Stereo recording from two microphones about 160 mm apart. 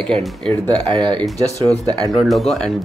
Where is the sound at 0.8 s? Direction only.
35° right (ahead or behind).